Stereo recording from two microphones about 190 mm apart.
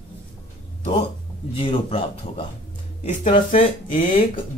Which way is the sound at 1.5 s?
30° left (ahead or behind).